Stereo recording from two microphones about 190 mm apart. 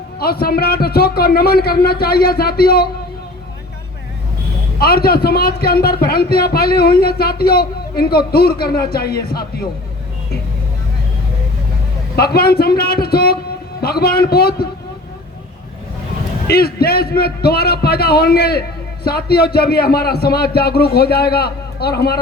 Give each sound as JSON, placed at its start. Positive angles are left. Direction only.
{"t": 0.2, "sound": "a man's voice", "side_deg": 55}
{"t": 4.8, "sound": "a man's voice", "side_deg": 55}
{"t": 12.1, "sound": "a man's voice", "side_deg": 55}
{"t": 16.5, "sound": "a man's voice", "side_deg": 55}